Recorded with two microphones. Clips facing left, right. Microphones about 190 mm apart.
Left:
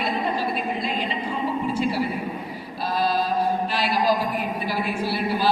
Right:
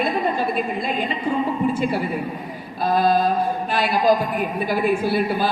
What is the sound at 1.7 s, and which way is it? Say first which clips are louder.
A man's voice: right 2 dB; 50° right (ahead or behind).